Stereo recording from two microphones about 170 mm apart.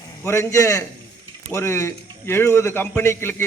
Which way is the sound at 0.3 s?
15° left (ahead or behind).